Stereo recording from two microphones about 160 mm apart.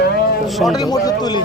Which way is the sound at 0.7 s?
25° left (ahead or behind).